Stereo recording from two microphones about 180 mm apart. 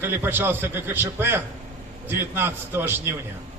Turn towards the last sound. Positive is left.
turn(degrees=-10)  # may be behind; listen again after turning